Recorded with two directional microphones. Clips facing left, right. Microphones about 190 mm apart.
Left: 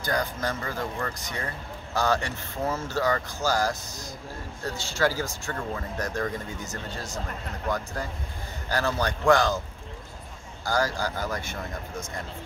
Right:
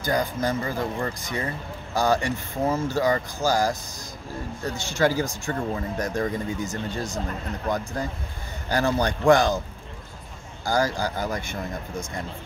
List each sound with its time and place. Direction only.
0.0 s speech: 10° right (ahead or behind)
4.7 s speech: 15° right (ahead or behind)
10.6 s speech: 15° right (ahead or behind)